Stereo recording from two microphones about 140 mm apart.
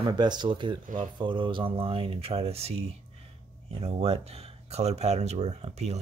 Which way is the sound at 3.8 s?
50° right (ahead or behind).